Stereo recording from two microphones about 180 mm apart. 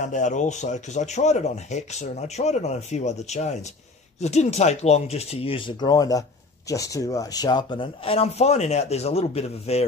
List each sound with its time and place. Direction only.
0.0 s speech: 45° left (ahead or behind)